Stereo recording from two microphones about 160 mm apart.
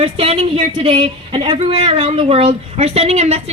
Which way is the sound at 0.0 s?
40° right (ahead or behind).